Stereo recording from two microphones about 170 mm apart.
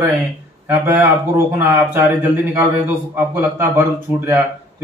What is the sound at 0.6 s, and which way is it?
Speech, 15° right (ahead or behind).